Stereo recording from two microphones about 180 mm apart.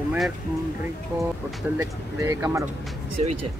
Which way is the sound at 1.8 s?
15° right (ahead or behind).